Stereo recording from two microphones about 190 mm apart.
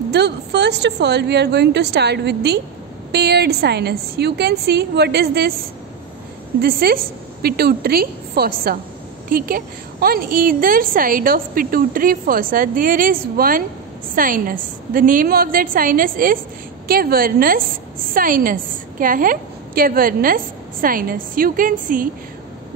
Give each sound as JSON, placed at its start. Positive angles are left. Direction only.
{"t": 0.1, "sound": "a woman's voice", "side_deg": -65}
{"t": 6.6, "sound": "a woman's voice", "side_deg": -50}